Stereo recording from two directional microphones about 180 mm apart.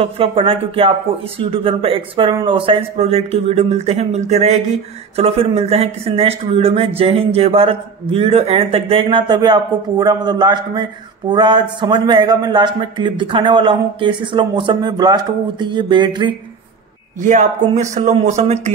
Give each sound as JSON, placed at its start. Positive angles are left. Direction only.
{"t": 0.0, "sound": "speech", "side_deg": -30}
{"t": 17.2, "sound": "speech", "side_deg": -45}